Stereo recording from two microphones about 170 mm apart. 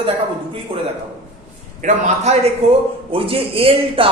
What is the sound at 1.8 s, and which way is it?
A man's voice, 45° right (ahead or behind).